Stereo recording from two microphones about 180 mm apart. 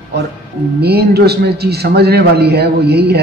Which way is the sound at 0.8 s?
60° right (ahead or behind).